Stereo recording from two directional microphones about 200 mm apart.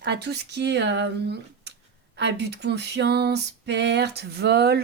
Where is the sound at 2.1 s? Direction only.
60° right (ahead or behind).